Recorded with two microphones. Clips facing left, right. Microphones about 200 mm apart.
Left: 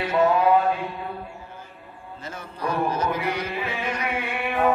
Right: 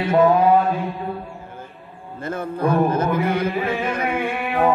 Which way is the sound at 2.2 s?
55° right (ahead or behind).